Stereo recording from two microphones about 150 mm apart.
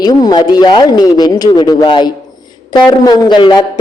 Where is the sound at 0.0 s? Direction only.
25° left (ahead or behind).